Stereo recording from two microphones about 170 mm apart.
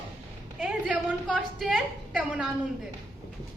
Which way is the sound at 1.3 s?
Centre (ahead or behind).